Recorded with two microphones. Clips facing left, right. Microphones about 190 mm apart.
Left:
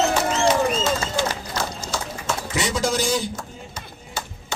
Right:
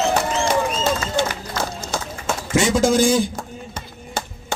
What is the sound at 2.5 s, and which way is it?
A man's voice, 50° right (ahead or behind).